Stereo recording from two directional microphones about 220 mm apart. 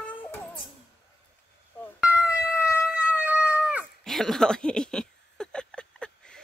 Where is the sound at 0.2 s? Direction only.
10° left (ahead or behind).